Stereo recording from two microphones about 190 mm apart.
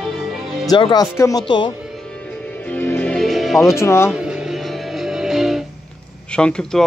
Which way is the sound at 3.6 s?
15° left (ahead or behind).